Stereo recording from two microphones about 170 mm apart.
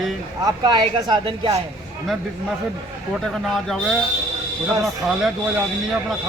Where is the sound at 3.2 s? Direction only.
Centre (ahead or behind).